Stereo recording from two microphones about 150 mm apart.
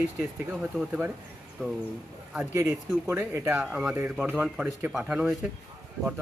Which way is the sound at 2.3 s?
15° right (ahead or behind).